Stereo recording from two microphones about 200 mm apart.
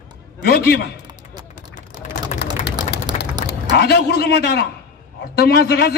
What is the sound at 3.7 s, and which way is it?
A man's voice, 55° left (ahead or behind).